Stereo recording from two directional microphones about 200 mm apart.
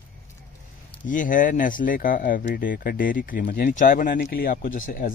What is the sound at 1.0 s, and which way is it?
Speech, 40° left (ahead or behind).